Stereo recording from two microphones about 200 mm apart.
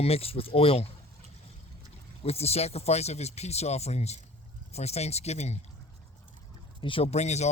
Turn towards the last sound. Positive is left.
turn(degrees=35)  # may be behind; listen again after turning